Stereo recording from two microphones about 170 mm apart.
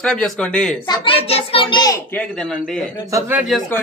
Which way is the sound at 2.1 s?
5° left (ahead or behind).